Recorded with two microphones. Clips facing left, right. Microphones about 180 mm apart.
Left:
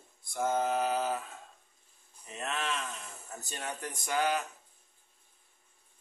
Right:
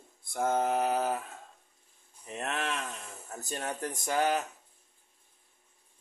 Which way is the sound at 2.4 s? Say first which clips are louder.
Right 1 dB; 55° right (ahead or behind).